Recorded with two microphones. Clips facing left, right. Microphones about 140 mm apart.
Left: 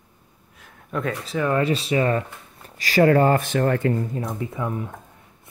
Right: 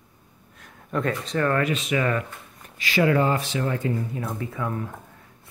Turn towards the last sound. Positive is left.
turn(degrees=20)  # may be behind; listen again after turning